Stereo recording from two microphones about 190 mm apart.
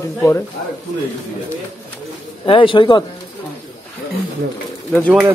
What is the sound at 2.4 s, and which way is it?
Speech, 25° left (ahead or behind).